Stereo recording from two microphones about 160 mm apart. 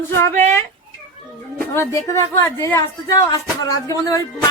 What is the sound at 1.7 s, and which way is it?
Speech, 15° left (ahead or behind).